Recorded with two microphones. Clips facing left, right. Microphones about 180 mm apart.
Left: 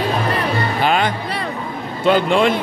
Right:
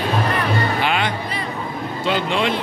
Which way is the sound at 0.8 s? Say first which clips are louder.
Left 4 dB; 45° left (ahead or behind).